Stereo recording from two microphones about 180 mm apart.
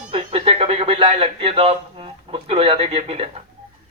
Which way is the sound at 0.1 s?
30° right (ahead or behind).